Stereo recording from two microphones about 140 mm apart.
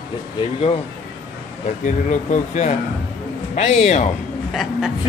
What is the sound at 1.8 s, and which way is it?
Speech, 60° left (ahead or behind).